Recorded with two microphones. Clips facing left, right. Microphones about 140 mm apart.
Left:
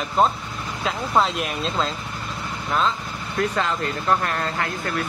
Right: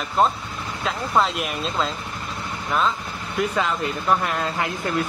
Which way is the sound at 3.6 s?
10° right (ahead or behind).